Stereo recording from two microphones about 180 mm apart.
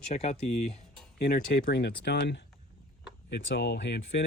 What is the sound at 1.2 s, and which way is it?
Speech, 60° left (ahead or behind).